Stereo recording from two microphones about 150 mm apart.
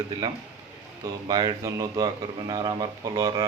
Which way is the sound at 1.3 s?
30° right (ahead or behind).